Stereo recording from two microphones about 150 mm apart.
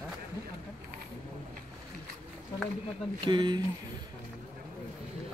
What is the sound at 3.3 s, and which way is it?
Speech, 30° right (ahead or behind).